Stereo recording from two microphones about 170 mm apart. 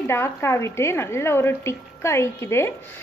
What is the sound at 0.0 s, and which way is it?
A woman's voice, 15° left (ahead or behind).